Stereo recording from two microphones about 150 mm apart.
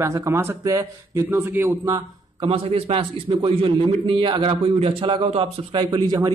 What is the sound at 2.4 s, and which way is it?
A man's voice, 40° right (ahead or behind).